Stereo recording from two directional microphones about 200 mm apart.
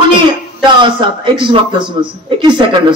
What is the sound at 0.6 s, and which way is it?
A man's voice, 25° right (ahead or behind).